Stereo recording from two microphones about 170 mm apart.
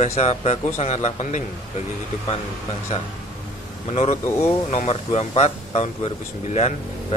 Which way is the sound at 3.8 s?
35° left (ahead or behind).